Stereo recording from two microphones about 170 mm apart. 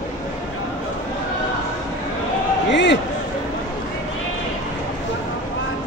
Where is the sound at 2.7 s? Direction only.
90° left.